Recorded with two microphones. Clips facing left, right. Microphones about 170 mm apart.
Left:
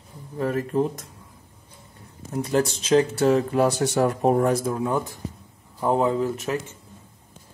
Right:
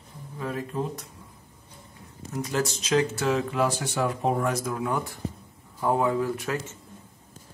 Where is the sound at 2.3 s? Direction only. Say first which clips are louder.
Left 5 dB; 30° left (ahead or behind); by 4.5 s 45° left (ahead or behind).